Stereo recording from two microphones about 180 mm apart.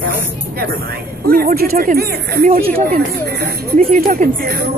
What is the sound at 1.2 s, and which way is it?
Speech, 55° right (ahead or behind).